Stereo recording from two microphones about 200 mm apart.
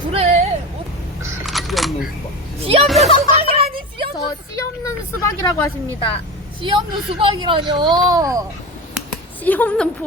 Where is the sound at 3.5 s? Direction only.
25° right (ahead or behind).